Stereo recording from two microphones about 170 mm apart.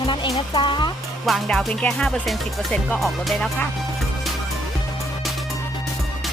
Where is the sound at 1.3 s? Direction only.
Centre (ahead or behind).